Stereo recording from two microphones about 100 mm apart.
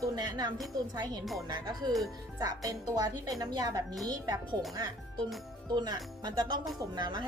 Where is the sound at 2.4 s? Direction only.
40° right (ahead or behind).